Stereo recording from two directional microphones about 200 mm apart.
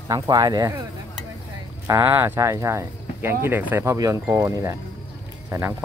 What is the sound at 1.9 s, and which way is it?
Speech, 15° right (ahead or behind).